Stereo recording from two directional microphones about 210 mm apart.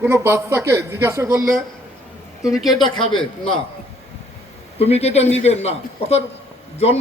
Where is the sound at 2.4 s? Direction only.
Centre (ahead or behind).